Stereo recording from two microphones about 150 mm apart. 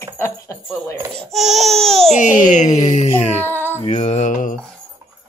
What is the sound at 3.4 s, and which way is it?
Speech, 15° left (ahead or behind).